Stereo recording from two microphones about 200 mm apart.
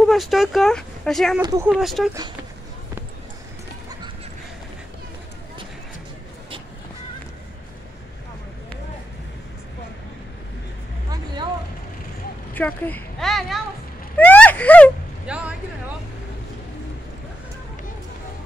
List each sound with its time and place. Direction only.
0.0 s speech: centre (ahead or behind)
1.4 s speech: 15° right (ahead or behind)
1.7 s speech: centre (ahead or behind)
12.5 s speech: 10° left (ahead or behind)
14.1 s a sound: 10° left (ahead or behind)
15.2 s speech: 5° right (ahead or behind)